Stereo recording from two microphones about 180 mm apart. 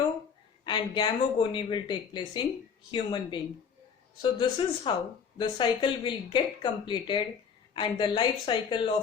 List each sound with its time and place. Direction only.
0.6 s speech: 25° left (ahead or behind)